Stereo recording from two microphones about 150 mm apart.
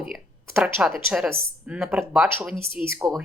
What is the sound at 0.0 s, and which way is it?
A woman's voice, centre (ahead or behind).